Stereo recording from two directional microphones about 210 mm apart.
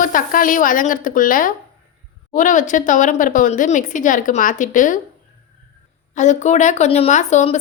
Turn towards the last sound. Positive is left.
turn(degrees=35)  # may be behind; listen again after turning